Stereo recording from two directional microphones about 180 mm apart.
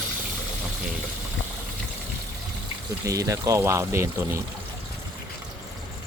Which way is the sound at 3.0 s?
20° right (ahead or behind).